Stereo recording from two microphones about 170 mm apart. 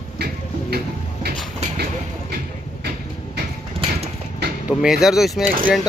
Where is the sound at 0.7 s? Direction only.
65° right (ahead or behind).